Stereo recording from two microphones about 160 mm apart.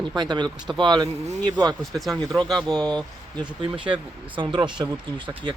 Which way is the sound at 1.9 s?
Centre (ahead or behind).